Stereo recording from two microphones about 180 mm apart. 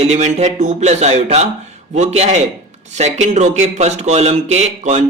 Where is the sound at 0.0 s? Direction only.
40° right (ahead or behind).